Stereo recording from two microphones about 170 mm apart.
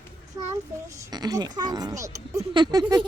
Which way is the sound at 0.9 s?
20° right (ahead or behind).